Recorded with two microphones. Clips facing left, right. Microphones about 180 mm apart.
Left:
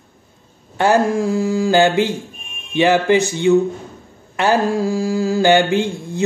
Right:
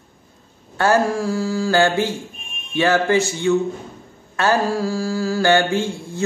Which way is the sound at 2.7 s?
15° left (ahead or behind).